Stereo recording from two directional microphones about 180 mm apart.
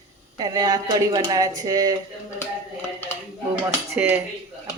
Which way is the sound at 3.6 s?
10° right (ahead or behind).